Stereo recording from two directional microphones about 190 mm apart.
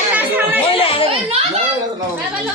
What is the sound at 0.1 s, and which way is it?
Music, 10° right (ahead or behind).